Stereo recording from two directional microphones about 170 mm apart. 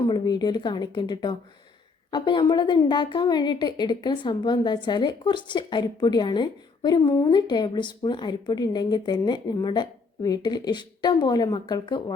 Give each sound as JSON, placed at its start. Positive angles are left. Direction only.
{"t": 0.1, "sound": "a woman's voice", "side_deg": 25}